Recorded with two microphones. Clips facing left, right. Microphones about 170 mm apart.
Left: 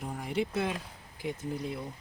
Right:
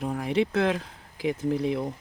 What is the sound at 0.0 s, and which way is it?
Speech, 90° right.